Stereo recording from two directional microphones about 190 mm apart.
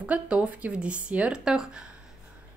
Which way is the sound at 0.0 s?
5° right (ahead or behind).